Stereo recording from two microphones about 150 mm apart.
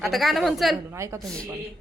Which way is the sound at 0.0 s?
Centre (ahead or behind).